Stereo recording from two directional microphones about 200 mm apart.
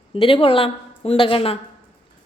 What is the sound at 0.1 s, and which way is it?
A woman's voice, 25° left (ahead or behind).